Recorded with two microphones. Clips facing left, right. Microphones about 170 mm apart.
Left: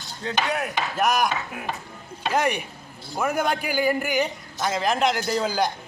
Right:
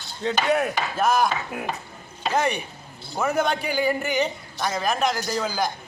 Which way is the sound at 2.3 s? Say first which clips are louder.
Even; 15° left (ahead or behind).